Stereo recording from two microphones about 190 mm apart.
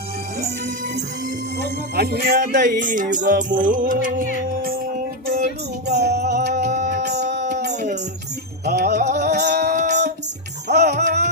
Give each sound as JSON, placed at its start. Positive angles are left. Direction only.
{"t": 2.0, "sound": "speech", "side_deg": -55}
{"t": 5.9, "sound": "music", "side_deg": -60}
{"t": 7.0, "sound": "a sound", "side_deg": -60}
{"t": 8.6, "sound": "music", "side_deg": -60}